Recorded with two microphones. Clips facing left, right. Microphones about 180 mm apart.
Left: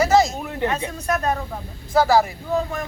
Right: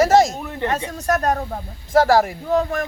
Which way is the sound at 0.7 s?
40° right (ahead or behind).